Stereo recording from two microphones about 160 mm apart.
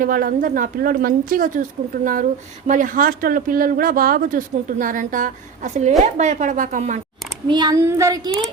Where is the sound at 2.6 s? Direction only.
55° right (ahead or behind).